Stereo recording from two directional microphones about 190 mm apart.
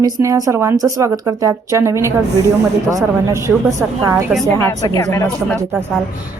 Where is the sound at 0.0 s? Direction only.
15° right (ahead or behind).